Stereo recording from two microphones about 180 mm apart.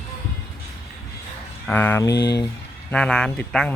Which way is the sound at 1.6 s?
10° left (ahead or behind).